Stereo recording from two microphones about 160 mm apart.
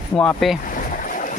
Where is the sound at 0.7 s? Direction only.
55° left (ahead or behind).